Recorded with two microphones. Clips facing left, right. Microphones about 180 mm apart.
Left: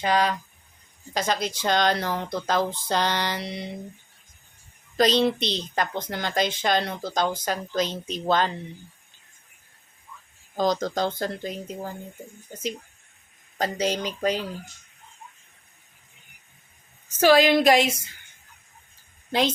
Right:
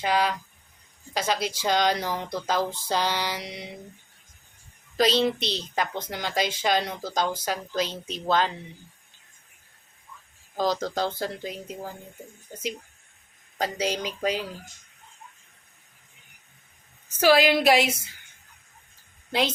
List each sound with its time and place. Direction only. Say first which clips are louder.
0.0 s a woman's voice: left 2 dB; 5° right (ahead or behind)
4.9 s a woman's voice: left 2 dB; 5° right (ahead or behind)
7.9 s speech: left 3 dB; 45° left (ahead or behind)
8.3 s speech: left 1 dB; 5° right (ahead or behind)
10.7 s speech: left 2 dB; 5° right (ahead or behind)
13.6 s a woman's voice: left 2 dB; 10° right (ahead or behind)
17.1 s a woman's voice: left 2 dB; 5° right (ahead or behind)
19.3 s a woman's voice: left 2 dB; 5° right (ahead or behind)